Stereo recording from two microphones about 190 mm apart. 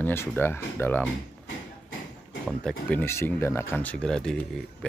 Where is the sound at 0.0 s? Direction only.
10° left (ahead or behind).